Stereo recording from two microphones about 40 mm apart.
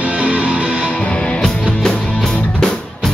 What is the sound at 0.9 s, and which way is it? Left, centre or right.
Music, left.